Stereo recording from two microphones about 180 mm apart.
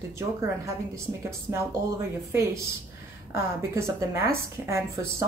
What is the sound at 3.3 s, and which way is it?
A woman's voice, 15° right (ahead or behind).